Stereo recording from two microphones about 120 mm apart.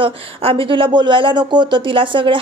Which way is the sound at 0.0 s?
50° right (ahead or behind).